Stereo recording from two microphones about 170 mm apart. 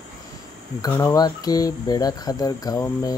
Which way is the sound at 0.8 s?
20° left (ahead or behind).